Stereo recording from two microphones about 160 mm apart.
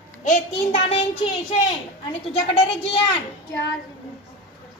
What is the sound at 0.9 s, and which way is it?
Speech, 40° left (ahead or behind).